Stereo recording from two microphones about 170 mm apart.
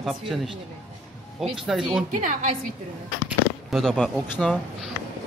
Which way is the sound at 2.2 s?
50° right (ahead or behind).